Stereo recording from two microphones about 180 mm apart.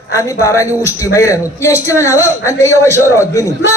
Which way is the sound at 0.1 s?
15° left (ahead or behind).